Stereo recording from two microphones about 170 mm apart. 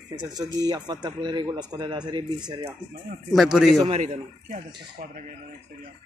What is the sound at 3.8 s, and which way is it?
Speech, 45° right (ahead or behind).